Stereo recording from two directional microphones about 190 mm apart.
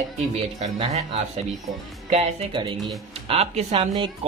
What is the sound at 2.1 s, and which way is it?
Speech, 30° right (ahead or behind).